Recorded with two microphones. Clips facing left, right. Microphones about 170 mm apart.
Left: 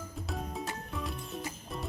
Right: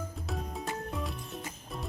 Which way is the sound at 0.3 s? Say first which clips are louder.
Even; centre (ahead or behind).